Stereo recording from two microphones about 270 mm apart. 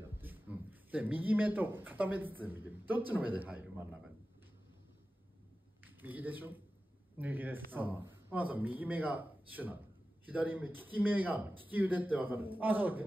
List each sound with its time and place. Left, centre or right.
0.2 s speech: centre
5.9 s a man's voice: centre